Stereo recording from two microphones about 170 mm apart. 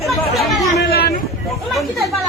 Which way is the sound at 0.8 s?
65° left (ahead or behind).